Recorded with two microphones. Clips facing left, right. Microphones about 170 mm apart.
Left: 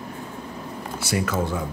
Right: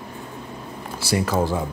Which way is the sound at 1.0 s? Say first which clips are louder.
Right 3 dB; 35° right (ahead or behind).